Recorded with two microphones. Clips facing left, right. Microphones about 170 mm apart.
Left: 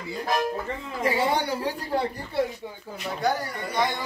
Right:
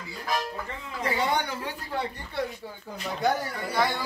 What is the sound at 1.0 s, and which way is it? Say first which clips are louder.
Speech: left 3 dB; 30° left (ahead or behind).